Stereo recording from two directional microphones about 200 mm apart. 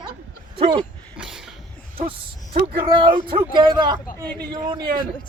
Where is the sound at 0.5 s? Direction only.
30° right (ahead or behind).